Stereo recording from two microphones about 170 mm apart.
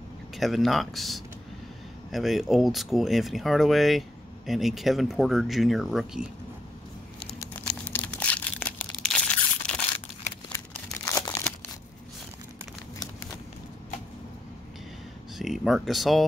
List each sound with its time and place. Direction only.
0.4 s speech: centre (ahead or behind)
7.3 s crumpling: 15° left (ahead or behind)
10.5 s crumpling: 20° left (ahead or behind)
15.3 s speech: centre (ahead or behind)